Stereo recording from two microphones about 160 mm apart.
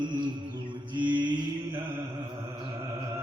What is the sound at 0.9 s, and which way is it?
Mantra, 30° right (ahead or behind).